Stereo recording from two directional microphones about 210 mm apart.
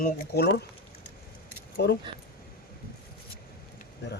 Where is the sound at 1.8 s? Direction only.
50° left (ahead or behind).